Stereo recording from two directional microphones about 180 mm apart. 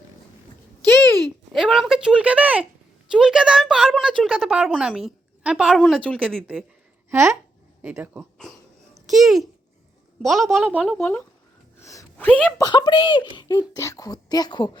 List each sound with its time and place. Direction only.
1.2 s a woman's voice: centre (ahead or behind)
9.0 s a child's voice: centre (ahead or behind)
11.8 s a sound: 15° left (ahead or behind)
12.1 s speech: 10° left (ahead or behind)
12.5 s speech: 20° left (ahead or behind)